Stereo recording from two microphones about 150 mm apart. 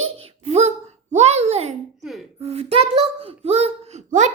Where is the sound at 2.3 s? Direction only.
45° right (ahead or behind).